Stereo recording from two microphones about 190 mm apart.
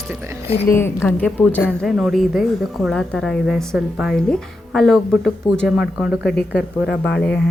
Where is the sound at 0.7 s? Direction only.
15° left (ahead or behind).